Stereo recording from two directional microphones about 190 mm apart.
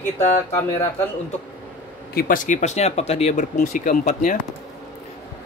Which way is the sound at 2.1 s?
45° left (ahead or behind).